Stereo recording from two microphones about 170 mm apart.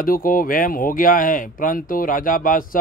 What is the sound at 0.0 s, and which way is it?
Speech, 55° left (ahead or behind).